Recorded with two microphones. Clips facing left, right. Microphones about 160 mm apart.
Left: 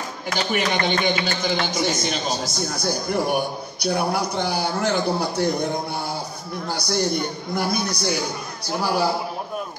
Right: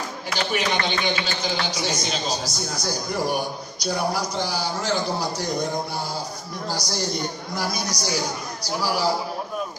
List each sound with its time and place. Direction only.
0.3 s speech: 50° left (ahead or behind)
6.7 s speech: 60° left (ahead or behind)